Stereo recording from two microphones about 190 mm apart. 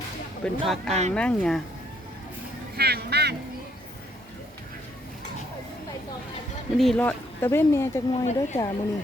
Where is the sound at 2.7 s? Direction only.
55° right (ahead or behind).